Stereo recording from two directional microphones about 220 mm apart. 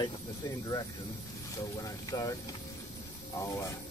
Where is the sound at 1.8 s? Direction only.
15° left (ahead or behind).